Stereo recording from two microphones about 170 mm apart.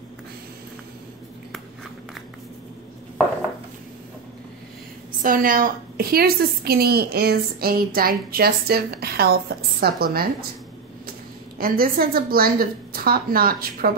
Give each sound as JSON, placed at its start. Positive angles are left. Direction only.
{"t": 5.2, "sound": "a woman's voice", "side_deg": -55}
{"t": 11.5, "sound": "a woman's voice", "side_deg": -60}